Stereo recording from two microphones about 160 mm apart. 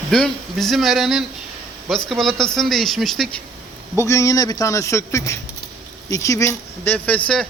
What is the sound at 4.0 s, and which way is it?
A man's voice, 20° left (ahead or behind).